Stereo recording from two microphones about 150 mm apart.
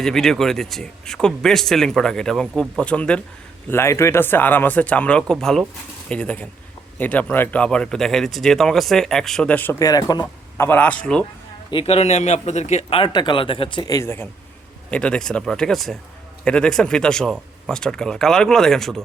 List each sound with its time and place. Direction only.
0.0 s speech: 5° left (ahead or behind); by 10.7 s 25° left (ahead or behind)
10.7 s speech: 10° left (ahead or behind)
11.7 s speech: 40° left (ahead or behind); by 19.0 s centre (ahead or behind)